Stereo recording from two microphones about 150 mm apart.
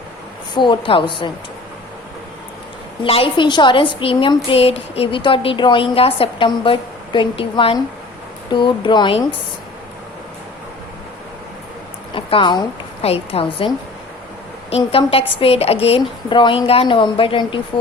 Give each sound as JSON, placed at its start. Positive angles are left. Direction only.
{"t": 0.5, "sound": "a woman's voice", "side_deg": 30}
{"t": 3.0, "sound": "a woman's voice", "side_deg": 35}
{"t": 12.1, "sound": "a woman's voice", "side_deg": 35}
{"t": 14.7, "sound": "a woman's voice", "side_deg": 40}